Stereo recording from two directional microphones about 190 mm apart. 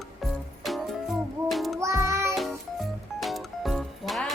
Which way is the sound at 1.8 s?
15° right (ahead or behind).